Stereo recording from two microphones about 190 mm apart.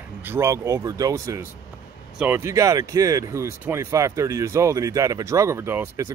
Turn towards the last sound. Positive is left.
turn(degrees=-10)  # may be behind; listen again after turning